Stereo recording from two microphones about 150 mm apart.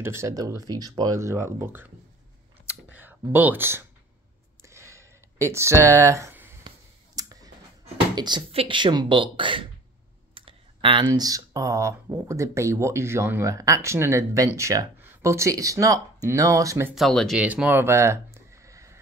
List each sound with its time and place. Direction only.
0.0 s speech: 20° right (ahead or behind)
2.6 s computer keyboard: 10° right (ahead or behind)
4.6 s a sound: 20° right (ahead or behind)
5.9 s speech: 20° right (ahead or behind)
7.2 s clicking: 25° right (ahead or behind)
8.1 s speech: 30° right (ahead or behind)
16.9 s speech: centre (ahead or behind)
17.4 s a sound: 10° right (ahead or behind)